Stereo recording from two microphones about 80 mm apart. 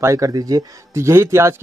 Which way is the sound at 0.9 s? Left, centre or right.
Right.